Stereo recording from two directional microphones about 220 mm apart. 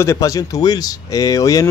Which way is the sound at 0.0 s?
15° left (ahead or behind).